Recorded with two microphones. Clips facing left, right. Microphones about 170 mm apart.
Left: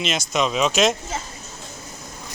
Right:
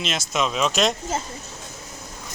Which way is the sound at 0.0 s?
Centre (ahead or behind).